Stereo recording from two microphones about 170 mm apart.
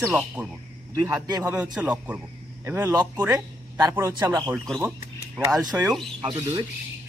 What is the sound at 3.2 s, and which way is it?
Speech, 10° right (ahead or behind).